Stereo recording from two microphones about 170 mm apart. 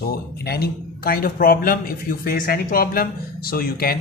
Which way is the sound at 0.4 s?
70° left (ahead or behind).